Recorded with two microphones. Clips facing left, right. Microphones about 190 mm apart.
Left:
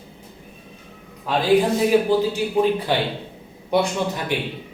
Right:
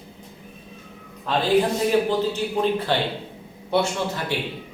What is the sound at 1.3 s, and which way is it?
A man's voice, 10° left (ahead or behind).